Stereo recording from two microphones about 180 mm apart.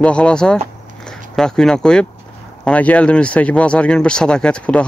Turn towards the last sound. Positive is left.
turn(degrees=5)  # may be behind; listen again after turning